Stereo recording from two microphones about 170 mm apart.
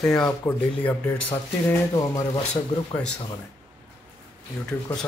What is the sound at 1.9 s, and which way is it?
Speech, 20° left (ahead or behind).